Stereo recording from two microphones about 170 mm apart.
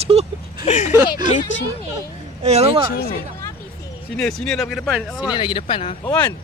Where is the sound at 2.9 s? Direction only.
80° left.